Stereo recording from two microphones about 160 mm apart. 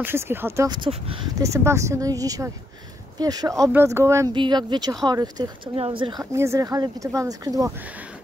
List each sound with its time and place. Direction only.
0.0 s speech: 15° right (ahead or behind)
0.7 s speech: 35° right (ahead or behind)
1.4 s speech: 20° right (ahead or behind)
4.3 s speech: 30° right (ahead or behind)
6.3 s speech: 15° right (ahead or behind)